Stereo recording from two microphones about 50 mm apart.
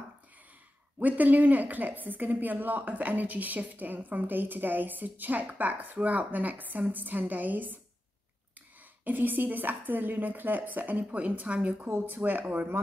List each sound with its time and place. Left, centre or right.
0.9 s a woman's voice: right
9.0 s a woman's voice: right